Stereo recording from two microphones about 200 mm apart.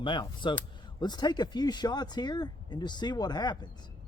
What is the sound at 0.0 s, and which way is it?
Speech, 25° left (ahead or behind).